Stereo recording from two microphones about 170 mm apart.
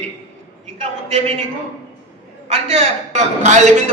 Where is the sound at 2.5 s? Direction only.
35° right (ahead or behind).